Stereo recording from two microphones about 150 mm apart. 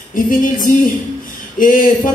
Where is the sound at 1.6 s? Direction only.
65° left (ahead or behind).